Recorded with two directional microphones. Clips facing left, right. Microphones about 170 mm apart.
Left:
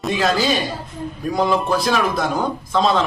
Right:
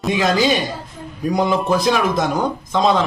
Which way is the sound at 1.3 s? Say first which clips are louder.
Right 1 dB; 20° right (ahead or behind).